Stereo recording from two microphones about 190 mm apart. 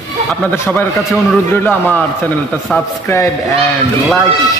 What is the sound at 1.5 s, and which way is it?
Speech, 10° left (ahead or behind).